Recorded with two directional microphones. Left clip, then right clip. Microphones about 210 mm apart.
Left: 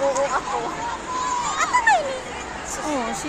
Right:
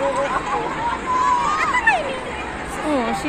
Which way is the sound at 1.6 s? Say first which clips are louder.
Left 4 dB; 35° left (ahead or behind).